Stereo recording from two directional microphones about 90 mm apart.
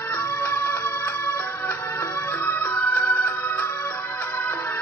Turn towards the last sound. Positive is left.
turn(degrees=20)  # may be behind; listen again after turning